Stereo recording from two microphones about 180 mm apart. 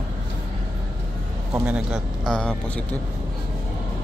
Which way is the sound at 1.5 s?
5° right (ahead or behind).